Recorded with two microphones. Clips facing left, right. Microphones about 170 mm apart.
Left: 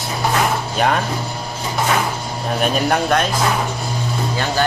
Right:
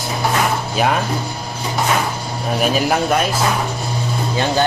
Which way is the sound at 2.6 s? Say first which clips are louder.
Right 1 dB; 5° right (ahead or behind).